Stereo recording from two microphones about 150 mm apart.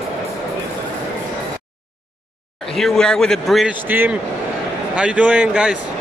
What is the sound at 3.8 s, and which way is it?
A man's voice, 15° right (ahead or behind).